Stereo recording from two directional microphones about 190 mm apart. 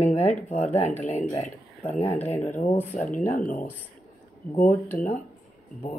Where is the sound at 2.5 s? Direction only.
40° left (ahead or behind).